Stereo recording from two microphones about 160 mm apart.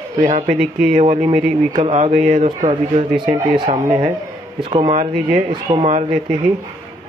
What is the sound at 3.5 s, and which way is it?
A child's voice, 30° right (ahead or behind).